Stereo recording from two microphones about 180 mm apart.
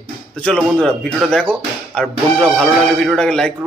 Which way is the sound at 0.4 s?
5° left (ahead or behind).